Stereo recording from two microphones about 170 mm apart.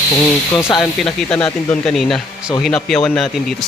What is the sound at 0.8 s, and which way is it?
Speech, centre (ahead or behind).